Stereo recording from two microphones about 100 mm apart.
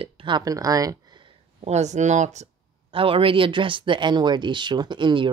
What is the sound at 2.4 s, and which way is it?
Speech, 65° right (ahead or behind).